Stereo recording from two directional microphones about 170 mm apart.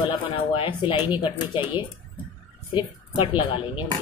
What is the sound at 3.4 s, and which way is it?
Speech, 30° left (ahead or behind).